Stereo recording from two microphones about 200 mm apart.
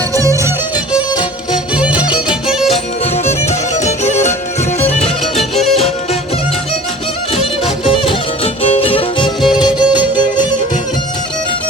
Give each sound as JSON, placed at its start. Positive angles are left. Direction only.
{"t": 0.1, "sound": "music", "side_deg": -15}
{"t": 1.8, "sound": "music", "side_deg": -5}
{"t": 3.8, "sound": "music", "side_deg": 35}
{"t": 5.0, "sound": "music", "side_deg": 0}
{"t": 7.3, "sound": "music", "side_deg": 25}